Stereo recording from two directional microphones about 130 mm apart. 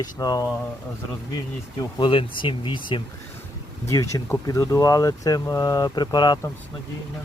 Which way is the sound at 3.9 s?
25° left (ahead or behind).